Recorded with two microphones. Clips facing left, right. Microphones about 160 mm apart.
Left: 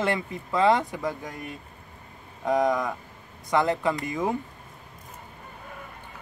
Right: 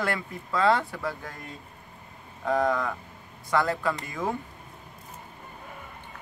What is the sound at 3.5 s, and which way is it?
Speech, 20° left (ahead or behind).